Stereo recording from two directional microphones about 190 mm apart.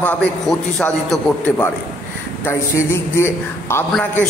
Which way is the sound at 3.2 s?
15° left (ahead or behind).